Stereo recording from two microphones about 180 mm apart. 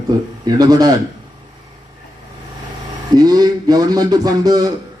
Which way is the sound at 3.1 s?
20° right (ahead or behind).